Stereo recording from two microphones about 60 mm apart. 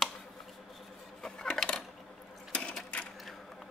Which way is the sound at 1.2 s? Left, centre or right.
Centre.